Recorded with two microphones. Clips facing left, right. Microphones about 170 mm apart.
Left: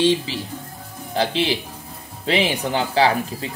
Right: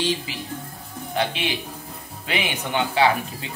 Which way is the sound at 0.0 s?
25° left (ahead or behind).